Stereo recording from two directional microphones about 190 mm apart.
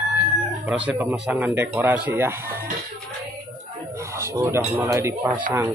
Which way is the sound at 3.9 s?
15° right (ahead or behind).